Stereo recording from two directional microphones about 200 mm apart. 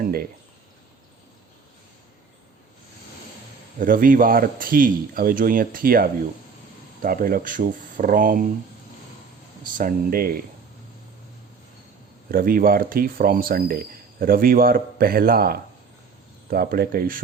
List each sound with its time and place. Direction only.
0.0 s a sound: 50° right (ahead or behind)
3.8 s speech: 45° right (ahead or behind)
9.7 s speech: 45° right (ahead or behind)
12.3 s speech: 45° right (ahead or behind)